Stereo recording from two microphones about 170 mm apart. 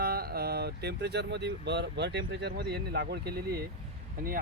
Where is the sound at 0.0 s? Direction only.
65° right (ahead or behind).